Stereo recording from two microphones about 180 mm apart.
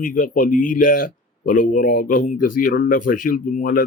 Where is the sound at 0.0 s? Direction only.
50° left (ahead or behind).